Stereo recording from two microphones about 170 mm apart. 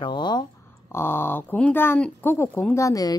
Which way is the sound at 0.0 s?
25° left (ahead or behind).